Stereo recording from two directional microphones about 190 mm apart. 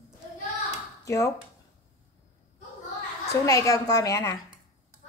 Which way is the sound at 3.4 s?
15° left (ahead or behind).